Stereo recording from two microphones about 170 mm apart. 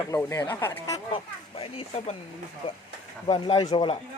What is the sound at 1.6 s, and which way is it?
Speech, 35° left (ahead or behind).